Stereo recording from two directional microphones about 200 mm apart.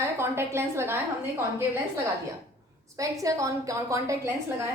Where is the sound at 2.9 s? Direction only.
15° right (ahead or behind).